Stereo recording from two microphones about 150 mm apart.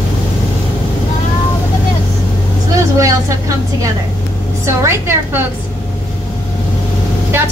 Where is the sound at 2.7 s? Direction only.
20° right (ahead or behind).